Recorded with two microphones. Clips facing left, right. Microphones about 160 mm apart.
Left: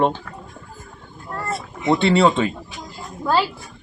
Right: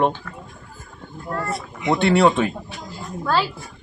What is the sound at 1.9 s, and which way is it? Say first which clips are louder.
Speech: even; centre (ahead or behind).